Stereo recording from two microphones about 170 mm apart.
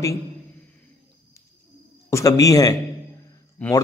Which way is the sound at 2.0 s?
20° left (ahead or behind).